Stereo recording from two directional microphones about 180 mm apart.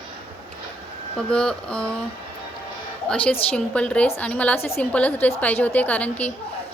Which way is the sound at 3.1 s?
5° left (ahead or behind).